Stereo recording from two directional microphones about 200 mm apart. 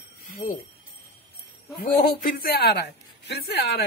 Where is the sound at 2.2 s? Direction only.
50° left (ahead or behind).